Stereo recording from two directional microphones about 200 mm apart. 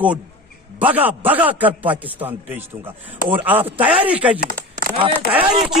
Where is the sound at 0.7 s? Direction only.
10° right (ahead or behind).